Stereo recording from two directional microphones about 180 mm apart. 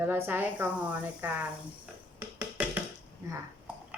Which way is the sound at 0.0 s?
10° right (ahead or behind).